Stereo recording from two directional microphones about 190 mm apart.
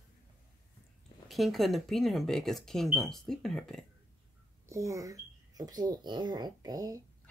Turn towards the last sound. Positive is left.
turn(degrees=-20)  # may be behind; listen again after turning